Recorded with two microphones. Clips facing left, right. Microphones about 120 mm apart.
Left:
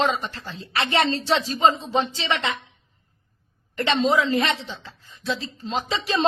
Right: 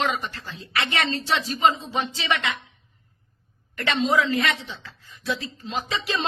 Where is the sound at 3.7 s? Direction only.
30° left (ahead or behind).